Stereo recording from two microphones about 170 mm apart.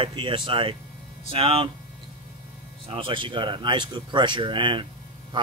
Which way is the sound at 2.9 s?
30° right (ahead or behind).